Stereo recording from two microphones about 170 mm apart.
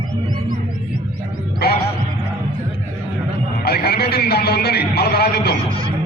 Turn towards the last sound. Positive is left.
turn(degrees=70)  # may be behind; listen again after turning